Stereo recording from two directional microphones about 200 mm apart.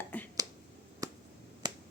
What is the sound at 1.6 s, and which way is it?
Finger snapping, 20° right (ahead or behind).